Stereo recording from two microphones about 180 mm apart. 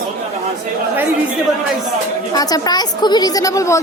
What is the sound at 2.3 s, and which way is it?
Speech, 20° left (ahead or behind).